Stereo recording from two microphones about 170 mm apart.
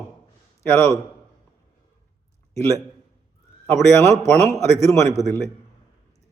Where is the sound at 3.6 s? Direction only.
15° left (ahead or behind).